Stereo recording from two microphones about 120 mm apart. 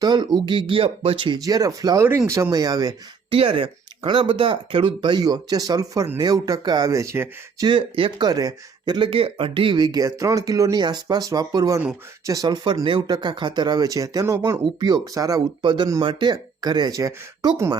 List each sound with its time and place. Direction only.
0.0 s speech: 35° right (ahead or behind)
1.4 s speech: 30° right (ahead or behind)
3.2 s speech: 50° right (ahead or behind); by 7.3 s 25° right (ahead or behind)
7.6 s speech: 45° right (ahead or behind)
9.0 s speech: 50° right (ahead or behind); by 14.6 s 25° right (ahead or behind)
14.6 s speech: 40° right (ahead or behind)
15.6 s speech: 40° right (ahead or behind)